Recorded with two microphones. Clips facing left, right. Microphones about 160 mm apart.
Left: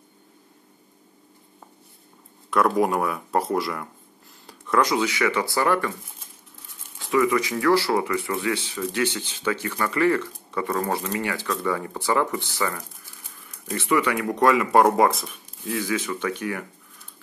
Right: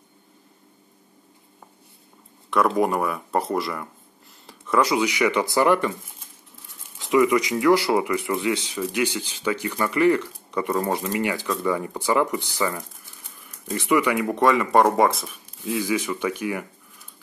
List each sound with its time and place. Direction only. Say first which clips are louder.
2.8 s speech: even; centre (ahead or behind)
4.5 s a sound: right 1 dB; centre (ahead or behind)
4.9 s speech: right 2 dB; 15° right (ahead or behind)
7.0 s speech: right 2 dB; 20° right (ahead or behind)
14.3 s speech: left 1 dB; centre (ahead or behind)
15.8 s speech: right 2 dB; 15° right (ahead or behind)